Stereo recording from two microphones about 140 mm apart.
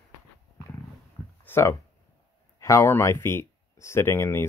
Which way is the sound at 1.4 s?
20° left (ahead or behind).